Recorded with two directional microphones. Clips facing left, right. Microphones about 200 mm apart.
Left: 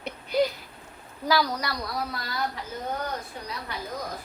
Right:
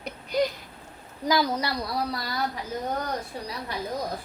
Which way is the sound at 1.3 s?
25° right (ahead or behind).